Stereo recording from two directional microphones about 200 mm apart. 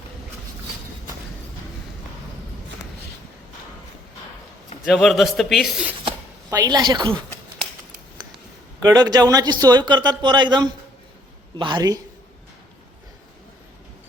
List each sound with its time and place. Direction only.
4.9 s a man's voice: centre (ahead or behind)
6.1 s chopping: 20° right (ahead or behind)
8.8 s a man's voice: 20° right (ahead or behind)